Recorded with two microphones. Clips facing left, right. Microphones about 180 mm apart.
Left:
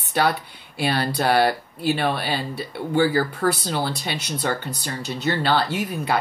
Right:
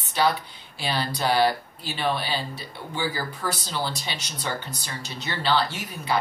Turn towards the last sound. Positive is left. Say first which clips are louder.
# left 4 dB
turn(degrees=55)  # may be behind; listen again after turning